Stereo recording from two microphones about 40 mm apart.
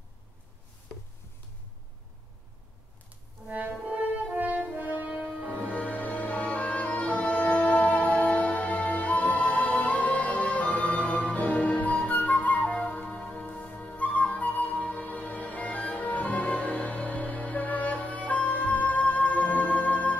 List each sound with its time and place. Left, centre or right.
3.4 s music: right
4.4 s french horn: right
4.7 s music: right
5.8 s music: left
11.3 s flute: left
13.9 s flute: left
14.8 s music: left
15.0 s music: left